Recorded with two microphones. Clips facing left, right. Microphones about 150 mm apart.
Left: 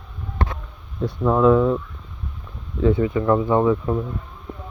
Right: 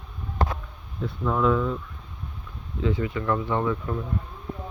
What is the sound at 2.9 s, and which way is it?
Speech, 30° left (ahead or behind).